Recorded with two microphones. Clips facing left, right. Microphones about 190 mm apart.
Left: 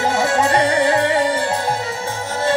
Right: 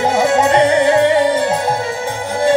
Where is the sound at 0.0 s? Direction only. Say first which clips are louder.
Right 4 dB; 20° right (ahead or behind).